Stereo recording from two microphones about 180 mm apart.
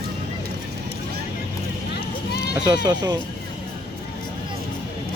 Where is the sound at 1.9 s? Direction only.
65° left (ahead or behind).